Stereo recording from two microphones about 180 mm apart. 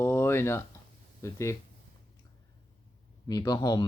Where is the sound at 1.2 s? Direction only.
15° left (ahead or behind).